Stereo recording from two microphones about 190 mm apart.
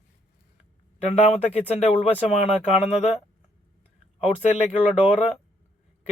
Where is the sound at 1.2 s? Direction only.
35° left (ahead or behind).